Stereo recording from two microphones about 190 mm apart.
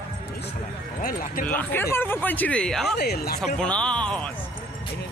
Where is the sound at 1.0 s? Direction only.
45° left (ahead or behind).